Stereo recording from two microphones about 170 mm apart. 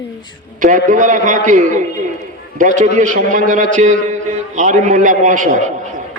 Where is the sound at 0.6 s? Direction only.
50° right (ahead or behind).